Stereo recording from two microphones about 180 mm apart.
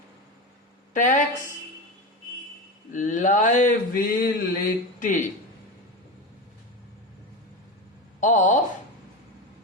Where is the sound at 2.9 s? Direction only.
45° left (ahead or behind).